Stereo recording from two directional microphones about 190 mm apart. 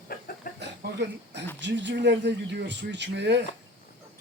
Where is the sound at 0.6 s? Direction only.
65° right (ahead or behind).